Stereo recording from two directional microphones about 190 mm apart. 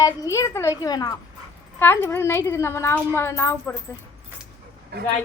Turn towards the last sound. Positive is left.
turn(degrees=-55)  # may be behind; listen again after turning